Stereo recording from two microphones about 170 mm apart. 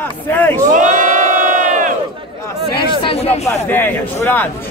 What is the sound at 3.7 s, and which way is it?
Speech, 10° left (ahead or behind).